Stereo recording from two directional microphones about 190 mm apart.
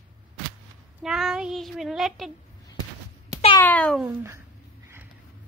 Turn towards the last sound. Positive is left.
turn(degrees=-15)  # may be behind; listen again after turning